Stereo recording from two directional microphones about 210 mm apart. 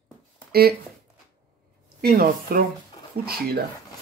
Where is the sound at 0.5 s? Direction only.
45° right (ahead or behind).